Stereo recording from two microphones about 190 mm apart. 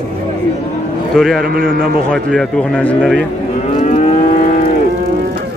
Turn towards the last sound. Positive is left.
turn(degrees=35)  # may be behind; listen again after turning